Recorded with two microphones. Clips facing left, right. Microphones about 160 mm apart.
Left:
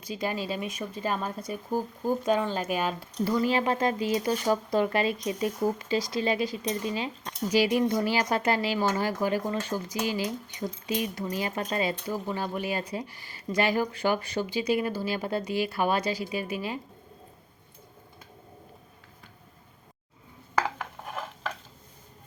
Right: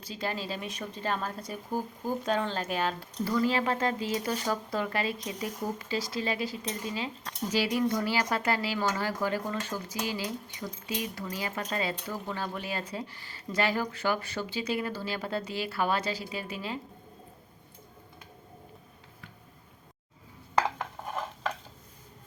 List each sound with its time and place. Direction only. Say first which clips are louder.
0.0 s speech: left 3 dB; 15° left (ahead or behind)